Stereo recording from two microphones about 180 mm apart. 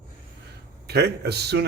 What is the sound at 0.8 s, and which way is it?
Speech, 65° right (ahead or behind).